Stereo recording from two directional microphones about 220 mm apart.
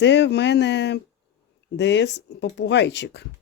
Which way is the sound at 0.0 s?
55° left (ahead or behind).